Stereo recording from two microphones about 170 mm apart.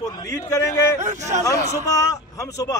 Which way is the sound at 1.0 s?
45° right (ahead or behind).